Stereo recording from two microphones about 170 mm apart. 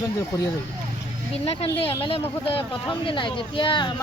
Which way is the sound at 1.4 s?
35° left (ahead or behind).